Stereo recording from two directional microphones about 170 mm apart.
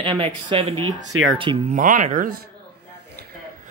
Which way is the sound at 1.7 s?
50° right (ahead or behind).